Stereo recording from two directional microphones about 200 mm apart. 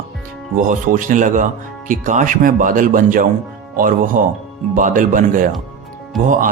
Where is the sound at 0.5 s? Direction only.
40° right (ahead or behind).